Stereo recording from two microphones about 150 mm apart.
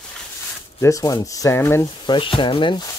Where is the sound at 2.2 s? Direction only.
35° left (ahead or behind).